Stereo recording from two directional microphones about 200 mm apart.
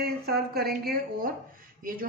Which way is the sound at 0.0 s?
50° right (ahead or behind).